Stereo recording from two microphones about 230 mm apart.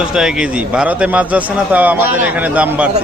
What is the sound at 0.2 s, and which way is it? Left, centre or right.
A man's voice, centre.